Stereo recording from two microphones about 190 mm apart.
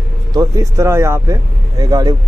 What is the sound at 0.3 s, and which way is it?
Speech, 20° right (ahead or behind).